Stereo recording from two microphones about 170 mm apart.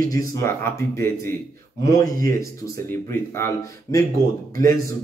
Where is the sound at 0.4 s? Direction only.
15° left (ahead or behind).